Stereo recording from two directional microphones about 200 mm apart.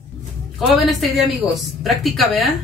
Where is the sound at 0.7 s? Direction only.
Centre (ahead or behind).